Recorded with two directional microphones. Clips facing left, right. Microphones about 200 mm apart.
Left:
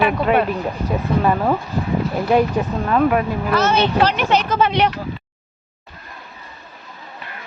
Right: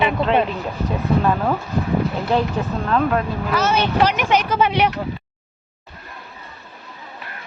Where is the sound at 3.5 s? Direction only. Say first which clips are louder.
Left 2 dB; 10° right (ahead or behind).